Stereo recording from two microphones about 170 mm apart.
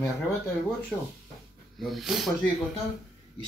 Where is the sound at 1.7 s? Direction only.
Centre (ahead or behind).